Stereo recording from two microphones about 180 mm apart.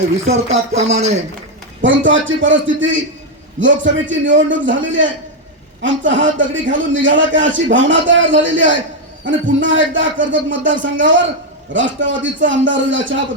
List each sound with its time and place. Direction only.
0.3 s speech: 40° right (ahead or behind)
1.8 s a man's voice: 90° right